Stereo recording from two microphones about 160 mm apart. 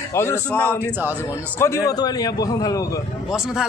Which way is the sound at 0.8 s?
10° right (ahead or behind).